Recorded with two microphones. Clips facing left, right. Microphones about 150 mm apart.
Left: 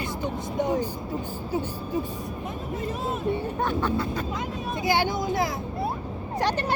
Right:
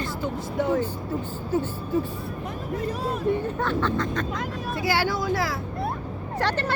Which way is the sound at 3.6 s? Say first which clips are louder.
Right 1 dB; 15° left (ahead or behind).